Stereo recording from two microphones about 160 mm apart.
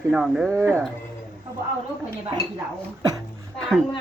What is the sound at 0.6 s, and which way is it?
Speech, 15° right (ahead or behind).